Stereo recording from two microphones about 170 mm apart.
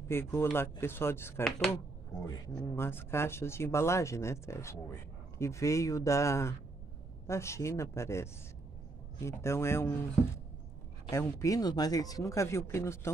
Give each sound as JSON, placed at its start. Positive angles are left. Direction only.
{"t": 0.1, "sound": "speech", "side_deg": 15}
{"t": 11.1, "sound": "speech", "side_deg": 15}